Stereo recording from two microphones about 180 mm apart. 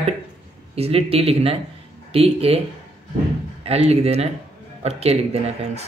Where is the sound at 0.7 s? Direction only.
35° right (ahead or behind).